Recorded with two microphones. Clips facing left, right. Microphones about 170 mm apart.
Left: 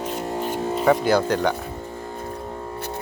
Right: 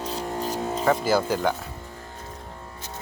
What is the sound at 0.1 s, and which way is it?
Music, 35° right (ahead or behind).